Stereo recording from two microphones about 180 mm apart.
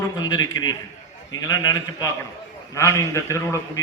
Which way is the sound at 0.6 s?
20° left (ahead or behind).